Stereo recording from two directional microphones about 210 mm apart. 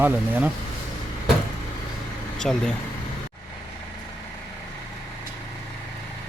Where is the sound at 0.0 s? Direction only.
10° right (ahead or behind).